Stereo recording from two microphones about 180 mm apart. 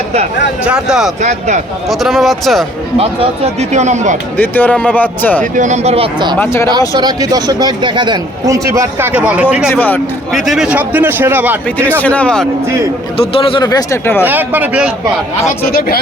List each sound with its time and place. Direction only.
0.6 s a man's voice: 5° right (ahead or behind)
1.2 s speech: 40° right (ahead or behind)
1.9 s a man's voice: centre (ahead or behind)
3.0 s speech: 35° right (ahead or behind)
4.4 s speech: 10° left (ahead or behind)
5.4 s speech: 45° right (ahead or behind)
6.4 s speech: 15° left (ahead or behind)
6.7 s a man's voice: 20° right (ahead or behind); by 9.7 s 5° right (ahead or behind)
9.7 s speech: 10° left (ahead or behind)
10.4 s a man's voice: centre (ahead or behind)
12.0 s speech: 5° left (ahead or behind)
13.1 s speech: 30° left (ahead or behind); by 14.3 s 10° left (ahead or behind)
14.3 s a man's voice: 10° right (ahead or behind)
15.6 s speech: 55° left (ahead or behind)